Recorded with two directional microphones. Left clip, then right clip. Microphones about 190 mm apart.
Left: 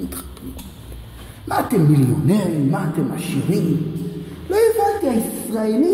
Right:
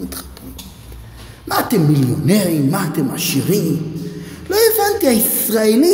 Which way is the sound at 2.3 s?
20° right (ahead or behind).